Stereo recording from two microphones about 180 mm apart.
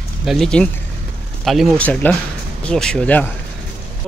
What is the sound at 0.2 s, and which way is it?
Speech, centre (ahead or behind).